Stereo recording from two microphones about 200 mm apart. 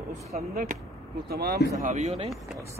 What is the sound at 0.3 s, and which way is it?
Speech, 45° right (ahead or behind).